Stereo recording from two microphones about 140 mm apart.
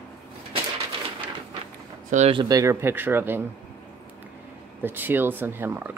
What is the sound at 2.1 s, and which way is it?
Speech, 55° right (ahead or behind).